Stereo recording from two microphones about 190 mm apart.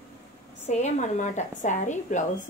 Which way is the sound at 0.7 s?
40° left (ahead or behind).